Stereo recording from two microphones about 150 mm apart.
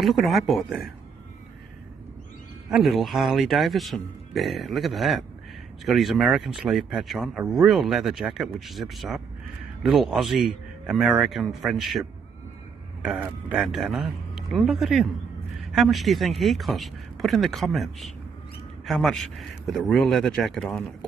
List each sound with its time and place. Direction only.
0.0 s speech: centre (ahead or behind)
2.7 s speech: centre (ahead or behind)
13.2 s speech: 10° right (ahead or behind)